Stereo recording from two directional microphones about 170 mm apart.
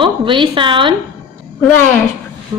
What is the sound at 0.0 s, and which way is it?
Speech, 30° right (ahead or behind).